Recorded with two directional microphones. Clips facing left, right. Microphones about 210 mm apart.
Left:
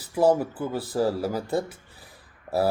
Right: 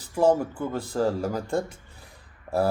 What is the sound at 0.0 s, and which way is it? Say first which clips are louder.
Speech: even; 5° left (ahead or behind).